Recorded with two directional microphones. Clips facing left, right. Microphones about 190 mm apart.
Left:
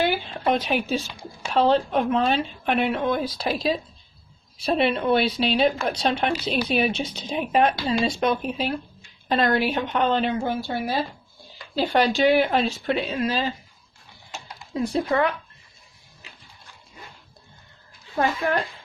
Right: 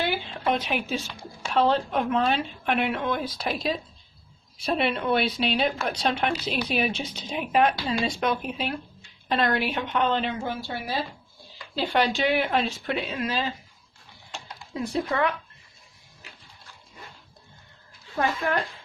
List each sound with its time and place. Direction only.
0.0 s speech: 40° left (ahead or behind)
14.7 s speech: 35° left (ahead or behind)